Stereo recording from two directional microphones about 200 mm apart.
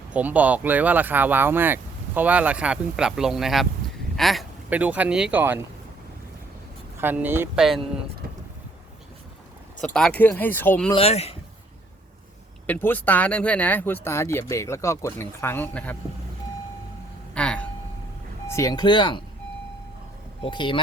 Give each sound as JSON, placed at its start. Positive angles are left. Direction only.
{"t": 0.1, "sound": "speech", "side_deg": -5}
{"t": 7.0, "sound": "speech", "side_deg": -10}
{"t": 9.8, "sound": "speech", "side_deg": 5}
{"t": 10.9, "sound": "speech", "side_deg": 30}
{"t": 12.6, "sound": "speech", "side_deg": 10}
{"t": 17.3, "sound": "a sound", "side_deg": 5}
{"t": 18.4, "sound": "speech", "side_deg": 15}
{"t": 20.4, "sound": "speech", "side_deg": 25}